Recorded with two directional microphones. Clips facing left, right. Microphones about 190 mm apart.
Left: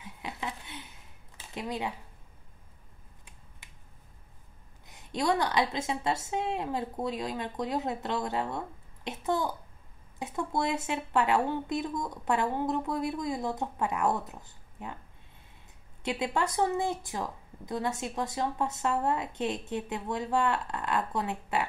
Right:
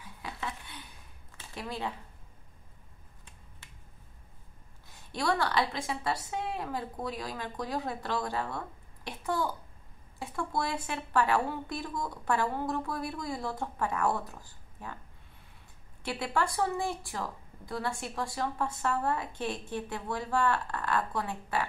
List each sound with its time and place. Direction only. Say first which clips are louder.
0.0 s a sound: left 2 dB; 20° left (ahead or behind)
4.8 s a woman's voice: left 2 dB; 20° left (ahead or behind)
16.0 s a woman's voice: left 2 dB; 20° left (ahead or behind)